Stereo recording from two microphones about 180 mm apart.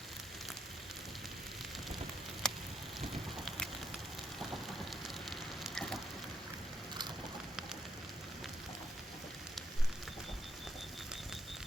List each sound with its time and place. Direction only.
2.4 s a sound: 5° left (ahead or behind)
3.0 s fire: centre (ahead or behind)
4.9 s fire: centre (ahead or behind)